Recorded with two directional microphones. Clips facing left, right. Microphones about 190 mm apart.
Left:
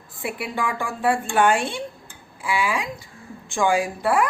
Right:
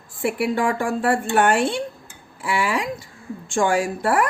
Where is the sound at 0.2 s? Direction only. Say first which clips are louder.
Right 6 dB; 50° right (ahead or behind).